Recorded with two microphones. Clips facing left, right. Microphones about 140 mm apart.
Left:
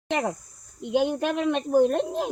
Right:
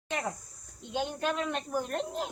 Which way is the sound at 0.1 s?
90° left.